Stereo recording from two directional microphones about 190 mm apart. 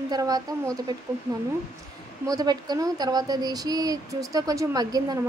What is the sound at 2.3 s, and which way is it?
Speech, 20° right (ahead or behind).